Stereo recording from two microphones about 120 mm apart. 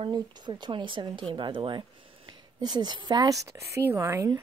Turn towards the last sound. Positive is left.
turn(degrees=-20)  # may be behind; listen again after turning